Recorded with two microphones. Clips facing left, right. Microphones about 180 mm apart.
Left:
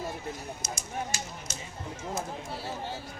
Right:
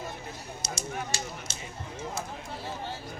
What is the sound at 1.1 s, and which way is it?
Speech, 30° right (ahead or behind).